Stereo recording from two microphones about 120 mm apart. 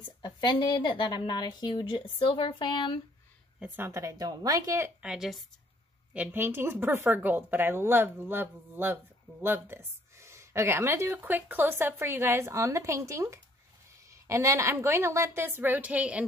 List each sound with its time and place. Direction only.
0.2 s a woman's voice: 40° left (ahead or behind)
3.5 s speech: 15° right (ahead or behind)
5.0 s speech: 5° right (ahead or behind)
6.1 s speech: 15° right (ahead or behind)